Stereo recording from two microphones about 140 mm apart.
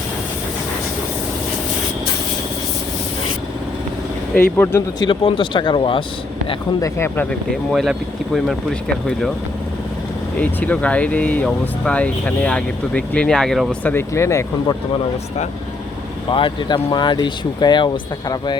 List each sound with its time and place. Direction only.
4.5 s speech: 15° left (ahead or behind)
5.0 s speech: 35° left (ahead or behind)
6.8 s speech: 15° left (ahead or behind)
7.3 s speech: centre (ahead or behind)
10.3 s speech: 10° left (ahead or behind)
16.3 s speech: 35° left (ahead or behind)